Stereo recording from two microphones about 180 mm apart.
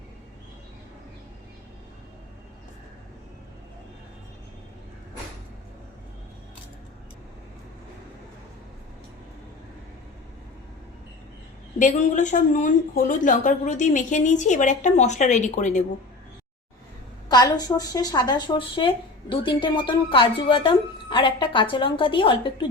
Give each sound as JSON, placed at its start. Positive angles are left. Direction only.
{"t": 11.8, "sound": "a woman's voice", "side_deg": 45}
{"t": 17.2, "sound": "speech", "side_deg": 20}